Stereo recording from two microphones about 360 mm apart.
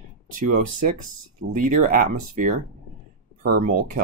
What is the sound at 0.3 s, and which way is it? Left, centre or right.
Speech, right.